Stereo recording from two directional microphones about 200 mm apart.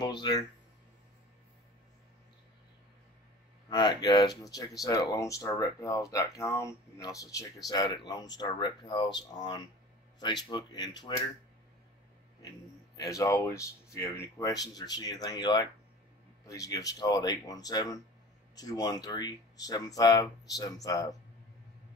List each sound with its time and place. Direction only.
0.0 s speech: 20° left (ahead or behind)
3.7 s speech: 20° left (ahead or behind)
12.4 s speech: 15° left (ahead or behind)